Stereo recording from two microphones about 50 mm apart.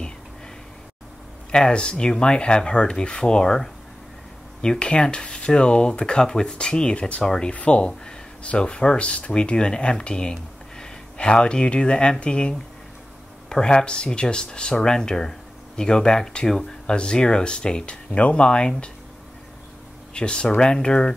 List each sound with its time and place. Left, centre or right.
1.5 s speech: centre
20.2 s speech: centre